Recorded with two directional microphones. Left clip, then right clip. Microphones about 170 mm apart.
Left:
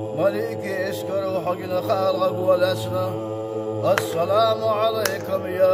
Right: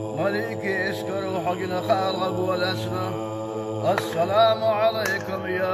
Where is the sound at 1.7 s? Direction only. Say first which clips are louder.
Left 3 dB; 45° left (ahead or behind).